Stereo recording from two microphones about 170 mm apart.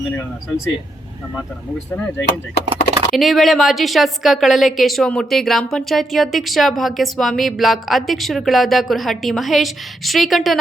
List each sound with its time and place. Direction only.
0.1 s speech: 15° left (ahead or behind)
1.9 s speech: 10° left (ahead or behind)
3.2 s a woman's voice: centre (ahead or behind)